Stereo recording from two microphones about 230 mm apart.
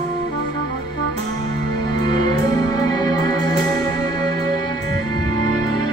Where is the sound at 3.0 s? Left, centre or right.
Centre.